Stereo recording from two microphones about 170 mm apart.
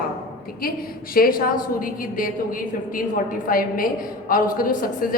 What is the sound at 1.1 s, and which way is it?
Speech, 60° left (ahead or behind).